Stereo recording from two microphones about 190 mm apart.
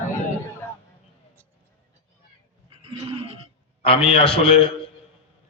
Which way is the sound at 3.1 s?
30° right (ahead or behind).